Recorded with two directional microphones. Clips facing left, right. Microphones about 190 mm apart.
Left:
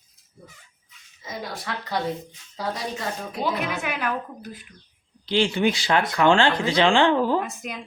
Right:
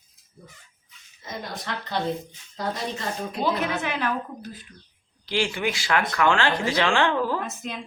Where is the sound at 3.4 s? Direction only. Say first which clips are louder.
Right 1 dB; 10° left (ahead or behind).